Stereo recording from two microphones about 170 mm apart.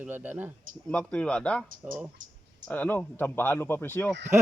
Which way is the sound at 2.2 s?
50° right (ahead or behind).